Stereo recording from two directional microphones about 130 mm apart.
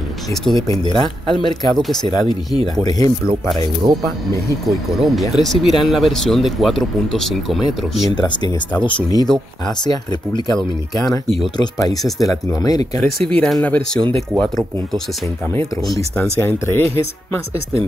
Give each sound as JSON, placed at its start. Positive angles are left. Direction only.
{"t": 0.6, "sound": "speech", "side_deg": 30}
{"t": 3.8, "sound": "speech", "side_deg": -35}
{"t": 4.6, "sound": "speech", "side_deg": 0}
{"t": 8.8, "sound": "speech", "side_deg": 30}
{"t": 13.3, "sound": "speech", "side_deg": 5}
{"t": 16.3, "sound": "speech", "side_deg": 15}